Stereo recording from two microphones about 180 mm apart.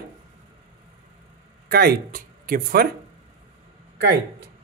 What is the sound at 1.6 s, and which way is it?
Speech, 60° right (ahead or behind).